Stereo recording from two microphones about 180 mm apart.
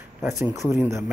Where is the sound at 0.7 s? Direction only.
15° right (ahead or behind).